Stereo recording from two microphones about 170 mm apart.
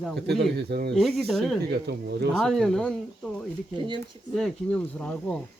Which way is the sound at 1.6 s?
75° right (ahead or behind).